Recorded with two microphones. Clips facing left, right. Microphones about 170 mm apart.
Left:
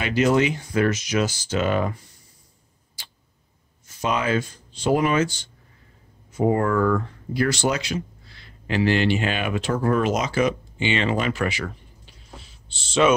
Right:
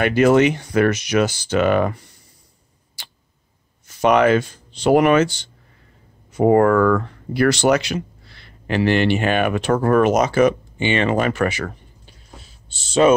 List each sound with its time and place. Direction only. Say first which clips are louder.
0.0 s speech: right 6 dB; 55° right (ahead or behind)
3.8 s speech: right 9 dB; 70° right (ahead or behind); by 11.7 s 50° right (ahead or behind)
13.0 s speech: right 4 dB; 35° right (ahead or behind)